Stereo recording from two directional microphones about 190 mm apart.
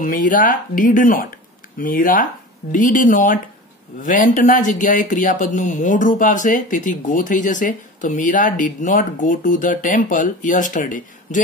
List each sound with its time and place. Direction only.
0.0 s speech: 45° left (ahead or behind)